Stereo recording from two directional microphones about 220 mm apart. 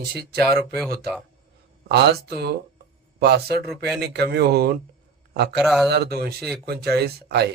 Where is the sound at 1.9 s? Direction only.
50° right (ahead or behind).